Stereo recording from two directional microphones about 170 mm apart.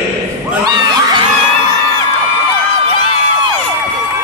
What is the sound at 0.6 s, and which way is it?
Crowd, 25° right (ahead or behind).